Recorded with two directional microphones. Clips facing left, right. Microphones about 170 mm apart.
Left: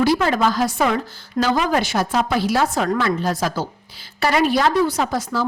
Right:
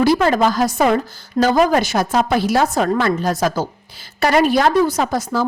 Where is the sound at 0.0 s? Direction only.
45° right (ahead or behind).